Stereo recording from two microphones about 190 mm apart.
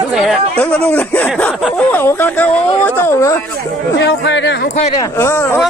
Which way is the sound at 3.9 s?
70° left (ahead or behind).